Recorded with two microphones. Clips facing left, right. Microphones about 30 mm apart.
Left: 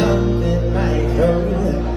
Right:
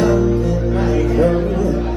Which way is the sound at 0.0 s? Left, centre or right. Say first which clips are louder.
Right 2 dB; left.